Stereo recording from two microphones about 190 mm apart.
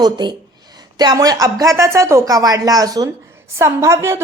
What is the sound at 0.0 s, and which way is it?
A woman's voice, 25° right (ahead or behind).